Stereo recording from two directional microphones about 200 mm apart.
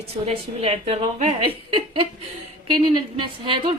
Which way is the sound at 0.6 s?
30° right (ahead or behind).